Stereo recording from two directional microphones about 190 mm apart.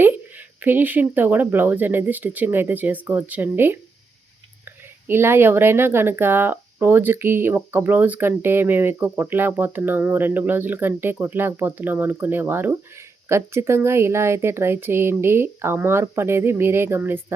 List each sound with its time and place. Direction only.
0.6 s speech: 10° right (ahead or behind)
5.0 s speech: 10° right (ahead or behind)